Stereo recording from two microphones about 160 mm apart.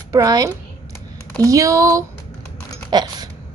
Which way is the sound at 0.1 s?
20° right (ahead or behind).